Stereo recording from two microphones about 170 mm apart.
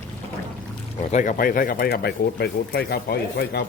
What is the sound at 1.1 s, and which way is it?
Speech, 50° left (ahead or behind).